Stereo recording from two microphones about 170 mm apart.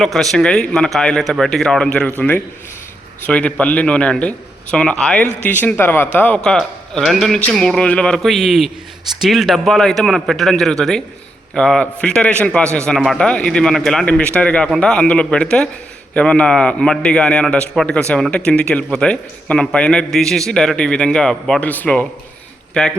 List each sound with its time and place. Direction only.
0.0 s a man's voice: centre (ahead or behind)